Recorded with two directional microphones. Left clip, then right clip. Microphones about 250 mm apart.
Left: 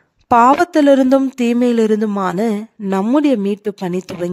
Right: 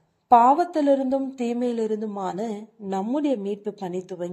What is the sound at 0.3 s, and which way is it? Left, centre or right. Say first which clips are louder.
Speech: left 6 dB; left.